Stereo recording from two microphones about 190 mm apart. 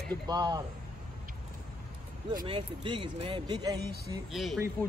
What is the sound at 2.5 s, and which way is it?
Speech, 25° right (ahead or behind).